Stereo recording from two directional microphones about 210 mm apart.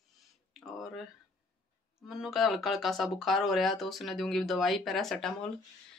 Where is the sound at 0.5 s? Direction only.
Centre (ahead or behind).